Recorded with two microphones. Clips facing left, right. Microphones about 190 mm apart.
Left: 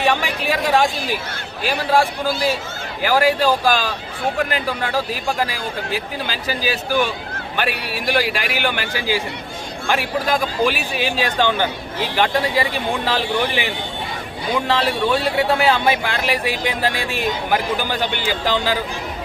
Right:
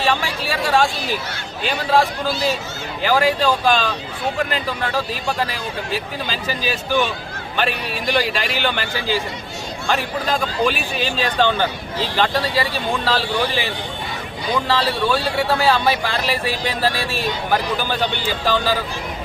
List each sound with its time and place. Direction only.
0.0 s a sound: 15° left (ahead or behind)
1.6 s speech: 10° left (ahead or behind)
14.7 s speech: 20° left (ahead or behind)